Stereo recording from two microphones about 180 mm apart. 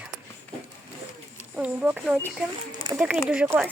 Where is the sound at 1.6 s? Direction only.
5° right (ahead or behind).